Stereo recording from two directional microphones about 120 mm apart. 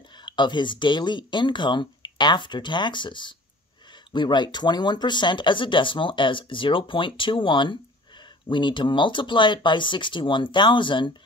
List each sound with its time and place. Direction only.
0.2 s speech: 40° left (ahead or behind)